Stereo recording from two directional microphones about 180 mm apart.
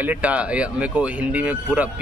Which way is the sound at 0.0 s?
10° right (ahead or behind).